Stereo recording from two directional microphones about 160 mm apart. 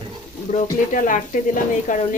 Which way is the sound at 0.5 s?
55° left (ahead or behind).